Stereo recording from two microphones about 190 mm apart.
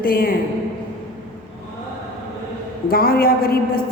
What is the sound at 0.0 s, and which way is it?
Speech, 50° left (ahead or behind).